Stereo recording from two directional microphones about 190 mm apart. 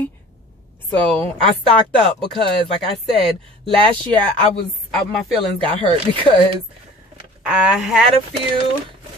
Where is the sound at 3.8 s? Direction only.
25° right (ahead or behind).